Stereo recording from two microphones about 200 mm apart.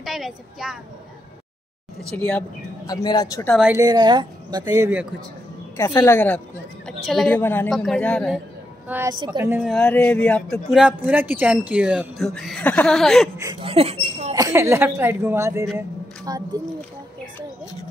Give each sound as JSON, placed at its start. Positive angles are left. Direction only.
{"t": 0.0, "sound": "a child's voice", "side_deg": 0}
{"t": 2.0, "sound": "speech", "side_deg": 5}
{"t": 2.9, "sound": "speech", "side_deg": 20}
{"t": 3.5, "sound": "speech", "side_deg": -5}
{"t": 3.8, "sound": "speech", "side_deg": -20}
{"t": 5.8, "sound": "speech", "side_deg": 15}
{"t": 8.8, "sound": "a woman's voice", "side_deg": -10}
{"t": 9.2, "sound": "speech", "side_deg": -20}
{"t": 9.5, "sound": "speech", "side_deg": -5}
{"t": 9.8, "sound": "speech", "side_deg": 5}
{"t": 13.6, "sound": "a sound", "side_deg": -30}
{"t": 14.3, "sound": "speech", "side_deg": -15}